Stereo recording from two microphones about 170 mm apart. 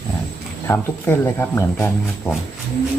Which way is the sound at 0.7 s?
10° left (ahead or behind).